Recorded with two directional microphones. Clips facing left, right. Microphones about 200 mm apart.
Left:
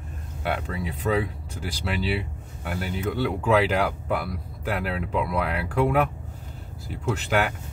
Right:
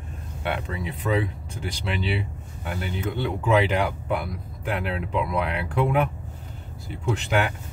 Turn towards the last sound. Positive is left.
turn(degrees=0)  # may be behind; listen again after turning